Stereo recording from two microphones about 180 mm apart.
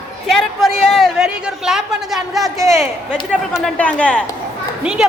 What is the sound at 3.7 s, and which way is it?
Speech, 5° left (ahead or behind).